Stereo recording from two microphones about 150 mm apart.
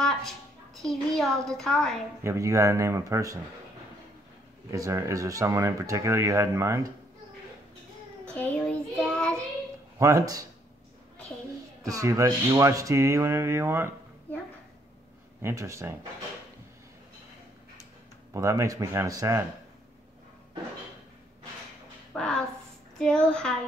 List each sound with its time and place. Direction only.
0.7 s child singing: centre (ahead or behind)
2.2 s speech: 20° right (ahead or behind)
4.6 s speech: 20° right (ahead or behind)
8.3 s child singing: 10° left (ahead or behind)
9.9 s speech: 20° right (ahead or behind)
11.8 s speech: 25° right (ahead or behind)
15.4 s speech: 20° right (ahead or behind)
18.3 s speech: 20° right (ahead or behind)
22.1 s a woman's voice: 5° left (ahead or behind)
22.9 s child singing: 5° left (ahead or behind)